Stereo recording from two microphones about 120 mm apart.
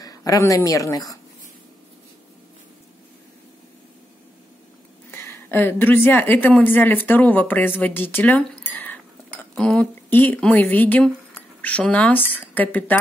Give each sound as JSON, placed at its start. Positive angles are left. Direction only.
{"t": 0.0, "sound": "speech", "side_deg": 30}
{"t": 5.1, "sound": "a woman's voice", "side_deg": 20}
{"t": 8.7, "sound": "dishes", "side_deg": 15}
{"t": 10.0, "sound": "a woman's voice", "side_deg": 15}